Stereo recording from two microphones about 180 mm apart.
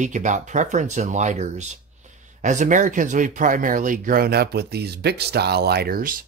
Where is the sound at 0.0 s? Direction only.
45° right (ahead or behind).